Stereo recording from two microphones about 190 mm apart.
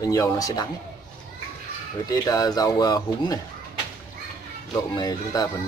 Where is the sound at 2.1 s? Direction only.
20° left (ahead or behind).